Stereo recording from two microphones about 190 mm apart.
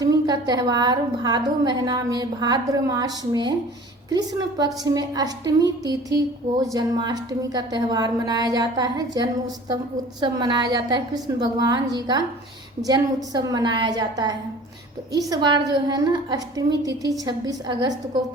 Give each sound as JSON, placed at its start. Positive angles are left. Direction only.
{"t": 0.0, "sound": "a woman's voice", "side_deg": -20}